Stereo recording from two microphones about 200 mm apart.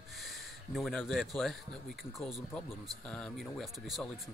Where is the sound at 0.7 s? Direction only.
Centre (ahead or behind).